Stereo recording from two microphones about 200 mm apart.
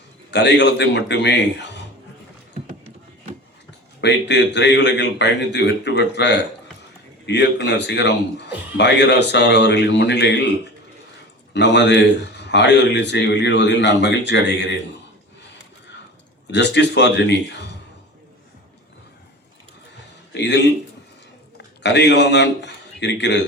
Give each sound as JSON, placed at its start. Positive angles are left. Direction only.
{"t": 0.3, "sound": "a man's voice", "side_deg": 60}
{"t": 4.0, "sound": "a man's voice", "side_deg": 60}
{"t": 11.5, "sound": "a man's voice", "side_deg": 60}
{"t": 16.5, "sound": "a man's voice", "side_deg": 60}
{"t": 20.3, "sound": "speech", "side_deg": 60}
{"t": 21.8, "sound": "a man's voice", "side_deg": 60}